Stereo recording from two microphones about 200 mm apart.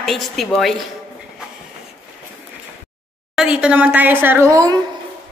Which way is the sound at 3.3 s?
5° right (ahead or behind).